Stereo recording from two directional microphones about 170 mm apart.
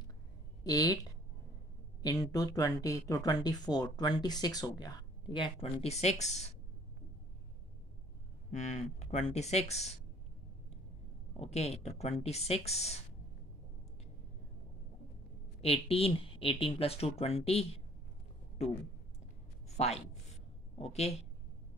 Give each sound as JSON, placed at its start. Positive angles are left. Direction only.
{"t": 0.7, "sound": "speech", "side_deg": 25}
{"t": 2.0, "sound": "a woman's voice", "side_deg": 20}
{"t": 8.5, "sound": "a woman's voice", "side_deg": 45}
{"t": 11.3, "sound": "a woman's voice", "side_deg": 35}
{"t": 15.6, "sound": "a woman's voice", "side_deg": 35}
{"t": 20.7, "sound": "a woman's voice", "side_deg": 40}